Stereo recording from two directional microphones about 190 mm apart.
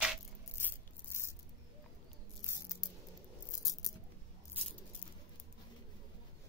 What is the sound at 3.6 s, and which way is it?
Biting, 20° left (ahead or behind).